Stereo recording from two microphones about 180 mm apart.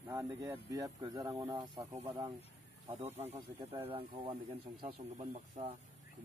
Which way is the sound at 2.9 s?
35° right (ahead or behind).